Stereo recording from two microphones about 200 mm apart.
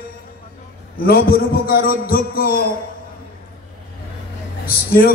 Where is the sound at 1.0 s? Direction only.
50° left (ahead or behind).